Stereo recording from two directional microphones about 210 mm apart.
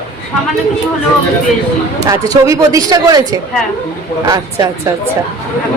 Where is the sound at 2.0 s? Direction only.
15° right (ahead or behind).